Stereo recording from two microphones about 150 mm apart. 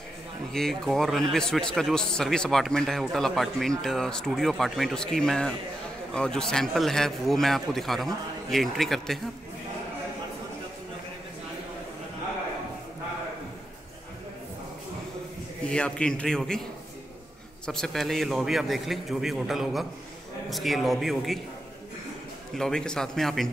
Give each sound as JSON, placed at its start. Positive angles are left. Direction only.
{"t": 0.5, "sound": "a man's voice", "side_deg": 5}
{"t": 15.7, "sound": "a man's voice", "side_deg": 5}
{"t": 17.6, "sound": "a man's voice", "side_deg": 5}
{"t": 22.5, "sound": "a man's voice", "side_deg": 5}